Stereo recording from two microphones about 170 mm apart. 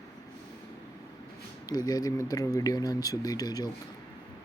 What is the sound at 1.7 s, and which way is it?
Speech, 25° left (ahead or behind).